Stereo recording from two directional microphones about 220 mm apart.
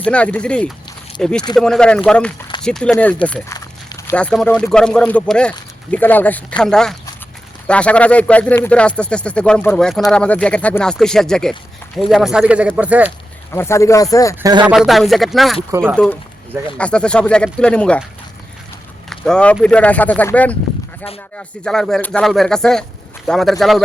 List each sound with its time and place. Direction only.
0.0 s speech: 5° left (ahead or behind)
13.5 s speech: 10° left (ahead or behind)
14.4 s speech: 20° right (ahead or behind)
14.7 s speech: centre (ahead or behind)
16.7 s speech: 5° left (ahead or behind)
19.1 s speech: 5° left (ahead or behind)